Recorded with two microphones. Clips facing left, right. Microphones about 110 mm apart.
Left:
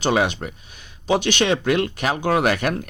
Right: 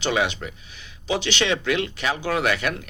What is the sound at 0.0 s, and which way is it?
Speech, 45° left (ahead or behind).